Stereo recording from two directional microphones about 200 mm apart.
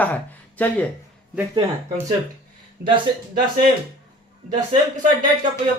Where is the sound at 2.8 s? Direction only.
50° right (ahead or behind).